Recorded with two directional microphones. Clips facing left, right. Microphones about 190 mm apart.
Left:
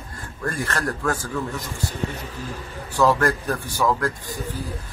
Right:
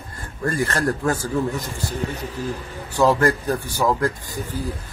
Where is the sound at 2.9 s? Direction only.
20° right (ahead or behind).